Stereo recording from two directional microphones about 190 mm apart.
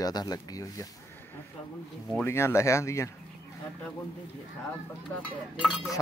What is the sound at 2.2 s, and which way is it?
Speech, 15° left (ahead or behind).